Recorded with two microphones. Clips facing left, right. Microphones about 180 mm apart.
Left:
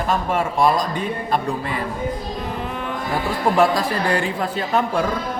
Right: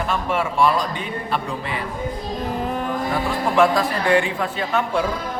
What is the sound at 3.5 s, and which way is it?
A man's voice, 40° left (ahead or behind).